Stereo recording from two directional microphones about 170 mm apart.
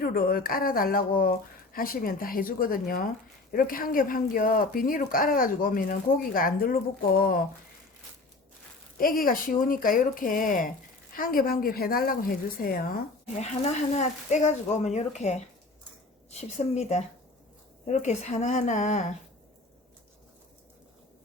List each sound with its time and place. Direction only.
0.0 s speech: 60° left (ahead or behind)
9.0 s speech: 55° left (ahead or behind)
13.9 s a woman's voice: 45° left (ahead or behind)